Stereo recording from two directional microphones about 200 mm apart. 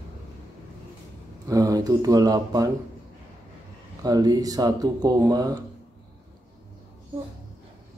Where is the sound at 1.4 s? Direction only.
15° right (ahead or behind).